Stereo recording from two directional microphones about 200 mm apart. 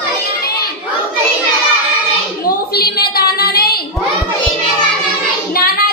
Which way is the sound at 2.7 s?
50° left (ahead or behind).